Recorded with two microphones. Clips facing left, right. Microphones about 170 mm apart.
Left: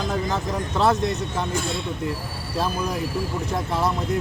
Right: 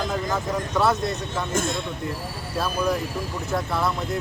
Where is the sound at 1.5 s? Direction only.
45° right (ahead or behind).